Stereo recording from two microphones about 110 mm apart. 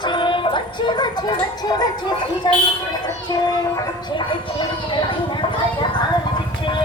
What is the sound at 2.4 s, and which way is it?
Speech, 45° left (ahead or behind).